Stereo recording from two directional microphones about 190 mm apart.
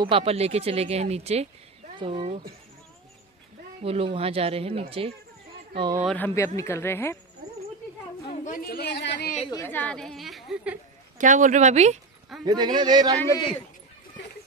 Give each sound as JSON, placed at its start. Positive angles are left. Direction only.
{"t": 0.0, "sound": "speech", "side_deg": -30}
{"t": 3.8, "sound": "speech", "side_deg": -30}
{"t": 6.0, "sound": "speech", "side_deg": 10}
{"t": 8.5, "sound": "speech", "side_deg": 50}
{"t": 9.5, "sound": "a woman's voice", "side_deg": 15}
{"t": 11.1, "sound": "speech", "side_deg": -40}
{"t": 12.4, "sound": "speech", "side_deg": -20}